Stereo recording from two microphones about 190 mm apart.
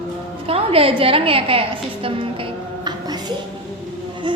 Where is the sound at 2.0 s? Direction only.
25° right (ahead or behind).